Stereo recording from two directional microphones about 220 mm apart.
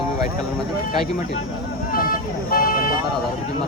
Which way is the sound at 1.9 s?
40° left (ahead or behind).